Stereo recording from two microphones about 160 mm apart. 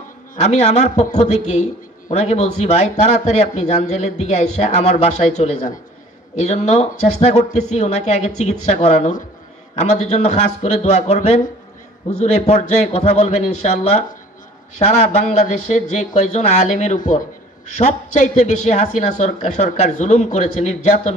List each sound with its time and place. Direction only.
0.4 s speech: 45° left (ahead or behind)